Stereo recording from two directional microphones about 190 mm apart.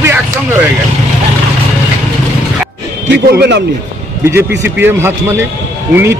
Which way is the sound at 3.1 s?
60° right (ahead or behind).